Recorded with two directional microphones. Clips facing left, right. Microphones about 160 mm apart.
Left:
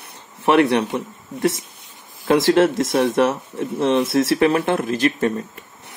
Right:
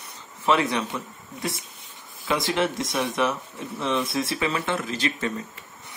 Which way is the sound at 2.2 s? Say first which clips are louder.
Left 10 dB; 75° left (ahead or behind).